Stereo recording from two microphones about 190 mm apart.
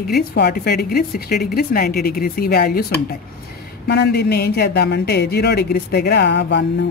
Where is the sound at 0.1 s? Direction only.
55° left (ahead or behind).